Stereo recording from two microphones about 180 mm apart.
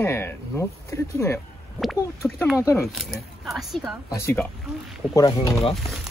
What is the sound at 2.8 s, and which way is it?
Speech, centre (ahead or behind).